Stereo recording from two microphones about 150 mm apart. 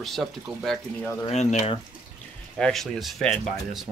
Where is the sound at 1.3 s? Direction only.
50° left (ahead or behind).